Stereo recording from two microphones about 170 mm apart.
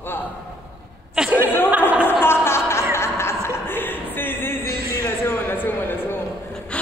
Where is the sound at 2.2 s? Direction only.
15° left (ahead or behind).